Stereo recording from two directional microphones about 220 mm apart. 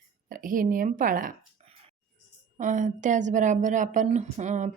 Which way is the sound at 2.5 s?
35° right (ahead or behind).